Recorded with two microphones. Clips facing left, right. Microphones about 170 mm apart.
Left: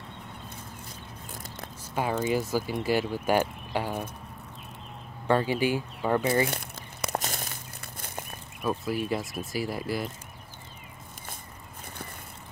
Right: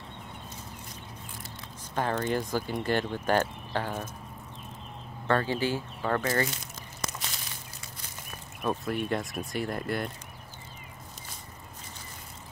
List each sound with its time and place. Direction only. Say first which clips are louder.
1.3 s scissors: left 3 dB; 45° left (ahead or behind)
2.0 s speech: left 2 dB; 10° left (ahead or behind)
5.3 s speech: left 3 dB; 15° left (ahead or behind)
6.4 s crumpling: left 3 dB; 60° left (ahead or behind)
8.6 s speech: left 1 dB; centre (ahead or behind)